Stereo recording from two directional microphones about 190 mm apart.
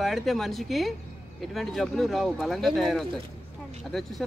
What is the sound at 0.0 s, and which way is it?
Speech, centre (ahead or behind).